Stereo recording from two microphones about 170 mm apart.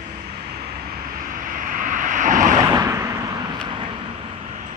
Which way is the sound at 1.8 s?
50° right (ahead or behind).